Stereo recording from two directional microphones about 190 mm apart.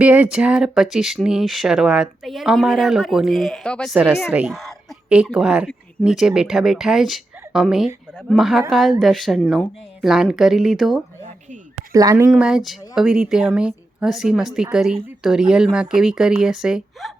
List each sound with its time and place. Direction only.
0.0 s speech: 5° right (ahead or behind)
11.9 s speech: 15° right (ahead or behind)